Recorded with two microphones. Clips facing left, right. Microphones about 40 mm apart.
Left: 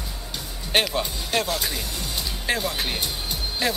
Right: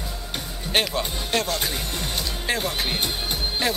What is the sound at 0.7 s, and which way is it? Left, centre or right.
Speech, centre.